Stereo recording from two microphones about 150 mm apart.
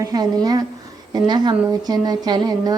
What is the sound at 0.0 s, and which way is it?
Speech, 25° right (ahead or behind).